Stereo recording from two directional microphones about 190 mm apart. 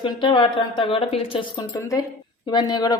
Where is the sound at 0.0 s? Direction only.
25° left (ahead or behind).